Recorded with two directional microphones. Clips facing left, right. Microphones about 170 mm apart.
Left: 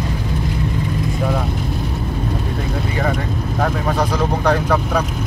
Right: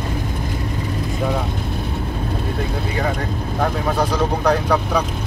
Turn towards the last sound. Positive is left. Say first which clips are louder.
# left 1 dB
turn(degrees=0)  # may be behind; listen again after turning